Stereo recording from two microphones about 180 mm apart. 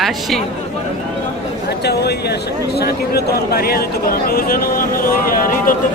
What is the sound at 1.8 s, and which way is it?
A man's voice, 65° left (ahead or behind).